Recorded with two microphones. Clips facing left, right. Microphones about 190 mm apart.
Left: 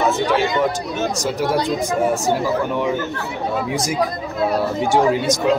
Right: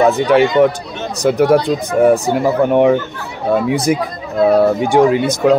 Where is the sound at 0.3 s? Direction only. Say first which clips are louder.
Right 8 dB; 65° right (ahead or behind).